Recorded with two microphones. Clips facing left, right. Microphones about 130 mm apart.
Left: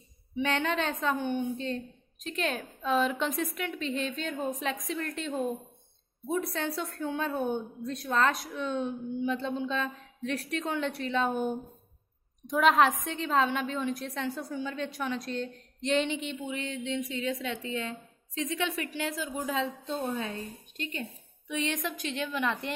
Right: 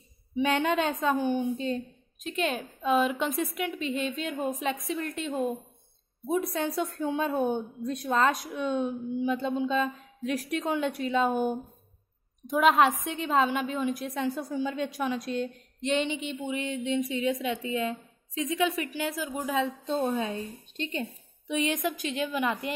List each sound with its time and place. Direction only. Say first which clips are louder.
0.4 s a woman's voice: right 4 dB; 10° right (ahead or behind)
6.5 s a woman's voice: right 4 dB; 15° right (ahead or behind)
16.3 s a woman's voice: right 3 dB; 15° right (ahead or behind)
21.5 s a woman's voice: right 4 dB; 10° right (ahead or behind)